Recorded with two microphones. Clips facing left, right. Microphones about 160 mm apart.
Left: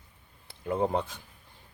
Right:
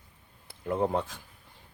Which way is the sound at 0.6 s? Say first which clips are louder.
Even; centre (ahead or behind).